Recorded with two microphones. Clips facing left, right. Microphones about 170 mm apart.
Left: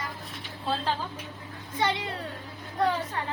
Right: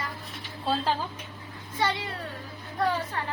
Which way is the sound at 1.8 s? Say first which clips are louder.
Even; 20° left (ahead or behind).